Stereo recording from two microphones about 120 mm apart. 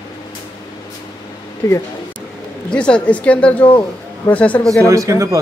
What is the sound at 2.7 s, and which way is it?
Speech, 10° left (ahead or behind).